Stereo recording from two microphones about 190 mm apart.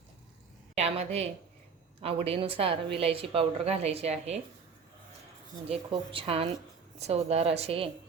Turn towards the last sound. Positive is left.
turn(degrees=-30)  # may be behind; listen again after turning